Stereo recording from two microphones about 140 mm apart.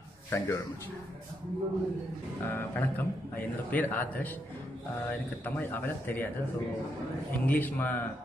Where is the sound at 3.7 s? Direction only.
15° left (ahead or behind).